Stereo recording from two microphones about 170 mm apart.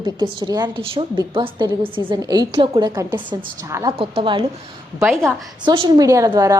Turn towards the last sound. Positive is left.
turn(degrees=-20)  # may be behind; listen again after turning